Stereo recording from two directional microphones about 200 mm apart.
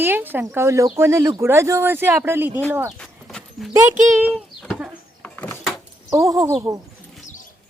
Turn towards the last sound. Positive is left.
turn(degrees=-15)  # may be behind; listen again after turning